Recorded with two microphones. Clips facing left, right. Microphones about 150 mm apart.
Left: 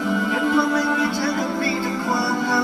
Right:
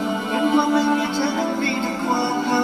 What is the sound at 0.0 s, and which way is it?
Music, 25° right (ahead or behind).